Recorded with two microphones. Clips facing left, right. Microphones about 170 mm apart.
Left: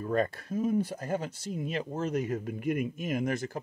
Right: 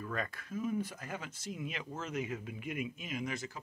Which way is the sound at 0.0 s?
35° left (ahead or behind).